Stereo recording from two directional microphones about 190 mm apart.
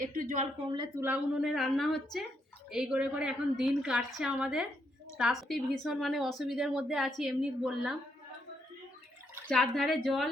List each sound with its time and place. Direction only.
0.0 s a woman's voice: 45° right (ahead or behind)
0.7 s a woman's voice: 20° right (ahead or behind)
1.0 s a woman's voice: 5° right (ahead or behind)
9.5 s a woman's voice: centre (ahead or behind)